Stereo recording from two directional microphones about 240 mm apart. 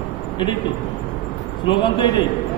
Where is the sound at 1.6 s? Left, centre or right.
Centre.